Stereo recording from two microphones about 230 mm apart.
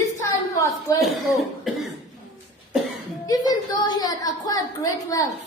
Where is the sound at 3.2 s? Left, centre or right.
Centre.